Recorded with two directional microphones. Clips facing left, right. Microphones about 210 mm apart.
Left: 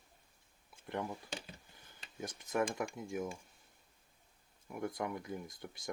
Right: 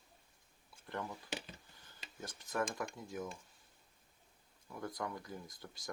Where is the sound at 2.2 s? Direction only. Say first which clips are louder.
Left 4 dB; 20° left (ahead or behind).